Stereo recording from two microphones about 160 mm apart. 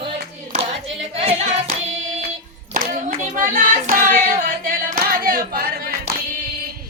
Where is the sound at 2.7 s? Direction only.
55° right (ahead or behind).